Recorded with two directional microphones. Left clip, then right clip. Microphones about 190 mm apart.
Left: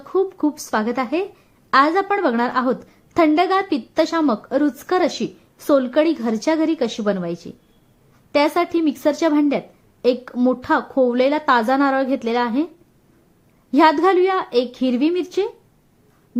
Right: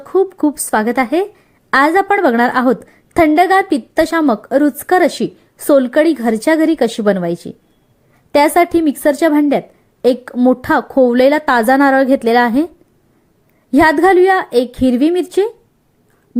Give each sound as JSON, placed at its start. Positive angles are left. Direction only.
{"t": 0.0, "sound": "a woman's voice", "side_deg": -25}